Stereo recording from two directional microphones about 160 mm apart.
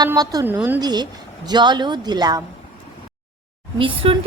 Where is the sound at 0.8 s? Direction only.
25° right (ahead or behind).